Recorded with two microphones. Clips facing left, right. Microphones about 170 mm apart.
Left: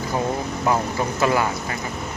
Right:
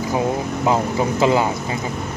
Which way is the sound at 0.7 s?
20° right (ahead or behind).